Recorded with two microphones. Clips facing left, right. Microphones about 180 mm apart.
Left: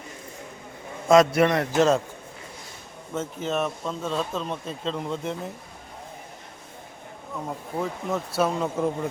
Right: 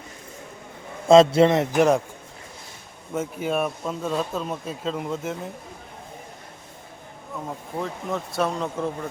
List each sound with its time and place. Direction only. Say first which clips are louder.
1.0 s a man's voice: right 4 dB; 30° right (ahead or behind)
3.2 s speech: right 2 dB; 10° right (ahead or behind)
7.4 s speech: left 1 dB; centre (ahead or behind)